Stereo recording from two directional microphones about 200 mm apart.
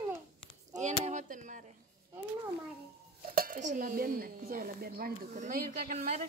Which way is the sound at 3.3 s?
40° right (ahead or behind).